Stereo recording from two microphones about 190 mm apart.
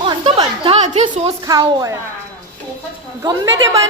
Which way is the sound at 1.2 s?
20° right (ahead or behind).